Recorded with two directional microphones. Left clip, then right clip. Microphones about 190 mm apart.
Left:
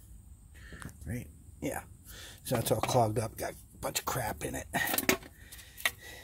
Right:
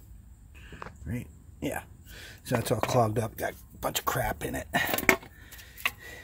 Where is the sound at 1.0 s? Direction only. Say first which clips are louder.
Right 3 dB; 15° right (ahead or behind).